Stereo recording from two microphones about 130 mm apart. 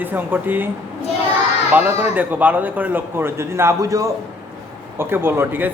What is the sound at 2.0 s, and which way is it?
A man's voice, 15° right (ahead or behind).